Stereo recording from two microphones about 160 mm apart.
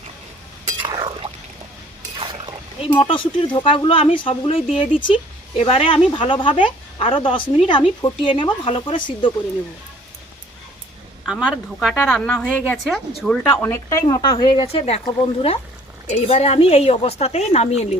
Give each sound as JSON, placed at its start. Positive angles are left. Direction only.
{"t": 0.9, "sound": "a sound", "side_deg": -30}
{"t": 2.9, "sound": "speech", "side_deg": 30}
{"t": 11.3, "sound": "a woman's voice", "side_deg": -5}
{"t": 13.5, "sound": "a woman's voice", "side_deg": 15}